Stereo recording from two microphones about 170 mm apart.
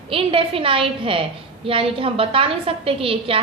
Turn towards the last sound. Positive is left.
turn(degrees=-35)  # may be behind; listen again after turning